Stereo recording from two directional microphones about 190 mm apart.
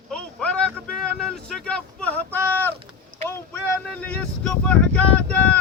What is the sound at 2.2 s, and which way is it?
Speech, 15° right (ahead or behind).